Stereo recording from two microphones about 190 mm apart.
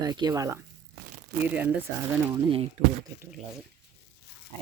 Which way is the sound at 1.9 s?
10° right (ahead or behind).